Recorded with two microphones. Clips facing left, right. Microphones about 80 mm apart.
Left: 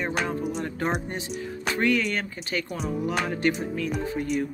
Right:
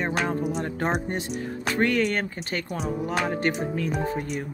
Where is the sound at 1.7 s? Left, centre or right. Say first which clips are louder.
Right 1 dB; right.